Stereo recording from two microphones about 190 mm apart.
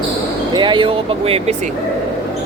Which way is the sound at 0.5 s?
25° right (ahead or behind).